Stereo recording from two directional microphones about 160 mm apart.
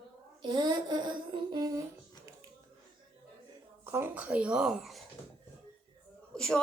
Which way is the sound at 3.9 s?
15° right (ahead or behind).